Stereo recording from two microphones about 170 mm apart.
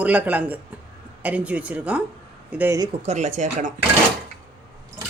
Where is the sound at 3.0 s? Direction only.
40° right (ahead or behind).